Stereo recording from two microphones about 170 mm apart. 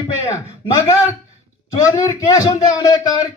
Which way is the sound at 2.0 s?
20° left (ahead or behind).